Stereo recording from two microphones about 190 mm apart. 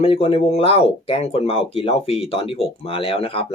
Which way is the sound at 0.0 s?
30° left (ahead or behind).